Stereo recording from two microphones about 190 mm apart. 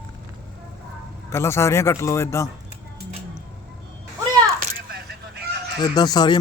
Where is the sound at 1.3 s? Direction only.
15° left (ahead or behind).